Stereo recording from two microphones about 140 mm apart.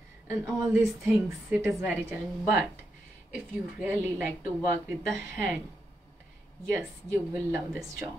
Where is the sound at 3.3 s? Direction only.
10° right (ahead or behind).